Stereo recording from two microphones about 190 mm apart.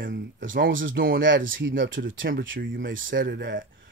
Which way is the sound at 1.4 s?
45° right (ahead or behind).